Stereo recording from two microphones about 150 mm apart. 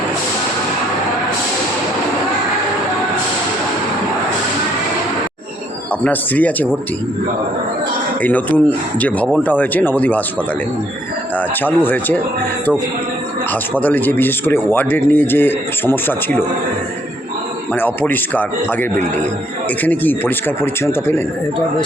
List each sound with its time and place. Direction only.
6.0 s speech: 10° left (ahead or behind)
8.2 s speech: 10° left (ahead or behind)
11.3 s speech: 10° left (ahead or behind)
13.5 s speech: 10° left (ahead or behind)
17.7 s speech: 10° left (ahead or behind)